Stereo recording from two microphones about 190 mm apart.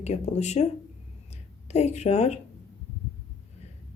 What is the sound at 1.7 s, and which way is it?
Speech, 35° left (ahead or behind).